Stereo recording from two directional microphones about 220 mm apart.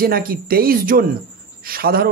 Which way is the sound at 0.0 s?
40° right (ahead or behind).